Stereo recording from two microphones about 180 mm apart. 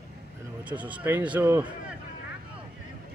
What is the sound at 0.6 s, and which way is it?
Speech, 10° right (ahead or behind).